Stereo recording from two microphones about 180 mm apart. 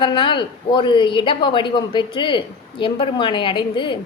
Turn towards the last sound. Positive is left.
turn(degrees=25)  # may be behind; listen again after turning